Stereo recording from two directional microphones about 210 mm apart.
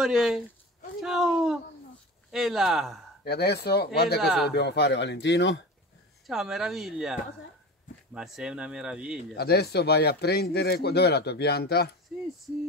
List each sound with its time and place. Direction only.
0.0 s speech: centre (ahead or behind)
3.3 s speech: 50° left (ahead or behind)
4.2 s speech: centre (ahead or behind)
4.5 s speech: 55° left (ahead or behind)
6.2 s speech: centre (ahead or behind)
9.3 s speech: 50° left (ahead or behind)